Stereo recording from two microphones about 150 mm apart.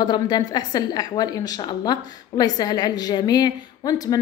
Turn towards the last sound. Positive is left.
turn(degrees=25)  # may be behind; listen again after turning